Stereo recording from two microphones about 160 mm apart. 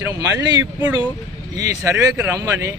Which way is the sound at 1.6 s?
20° right (ahead or behind).